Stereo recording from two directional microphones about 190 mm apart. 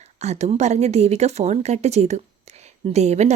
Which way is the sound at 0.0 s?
35° right (ahead or behind).